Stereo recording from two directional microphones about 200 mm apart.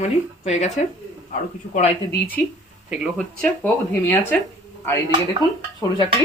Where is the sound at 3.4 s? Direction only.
10° left (ahead or behind).